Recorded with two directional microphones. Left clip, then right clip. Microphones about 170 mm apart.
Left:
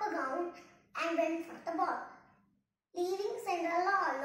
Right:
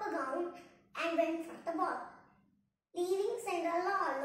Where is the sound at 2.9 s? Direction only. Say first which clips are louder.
Right 1 dB; 20° right (ahead or behind).